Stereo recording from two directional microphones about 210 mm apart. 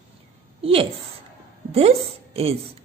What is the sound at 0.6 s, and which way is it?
A woman's voice, 25° right (ahead or behind).